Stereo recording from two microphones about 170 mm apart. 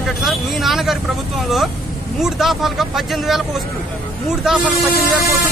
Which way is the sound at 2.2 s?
Centre (ahead or behind).